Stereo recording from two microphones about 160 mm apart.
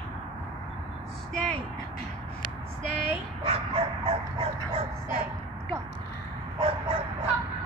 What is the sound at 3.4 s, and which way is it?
Dog, 35° right (ahead or behind).